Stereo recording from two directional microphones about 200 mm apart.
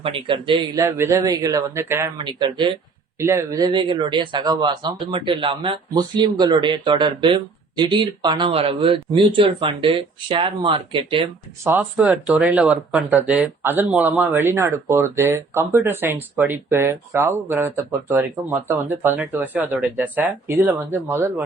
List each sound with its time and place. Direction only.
0.0 s speech: 25° right (ahead or behind)
2.1 s speech: 25° right (ahead or behind)
11.6 s speech: 10° right (ahead or behind)
19.1 s speech: centre (ahead or behind)